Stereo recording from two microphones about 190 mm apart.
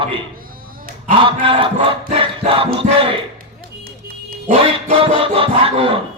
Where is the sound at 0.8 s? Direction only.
45° right (ahead or behind).